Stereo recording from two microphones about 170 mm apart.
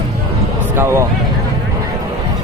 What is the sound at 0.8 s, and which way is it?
Speech, 15° right (ahead or behind).